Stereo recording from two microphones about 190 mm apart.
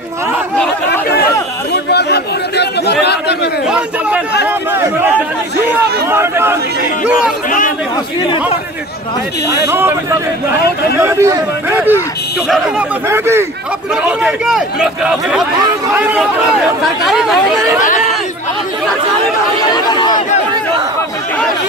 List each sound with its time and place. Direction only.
1.7 s chatter: 60° left (ahead or behind)
3.6 s speech: 5° right (ahead or behind)
5.7 s speech: 10° right (ahead or behind)
9.7 s speech: 10° right (ahead or behind)
11.0 s speech: 15° right (ahead or behind)
19.7 s chatter: 20° left (ahead or behind)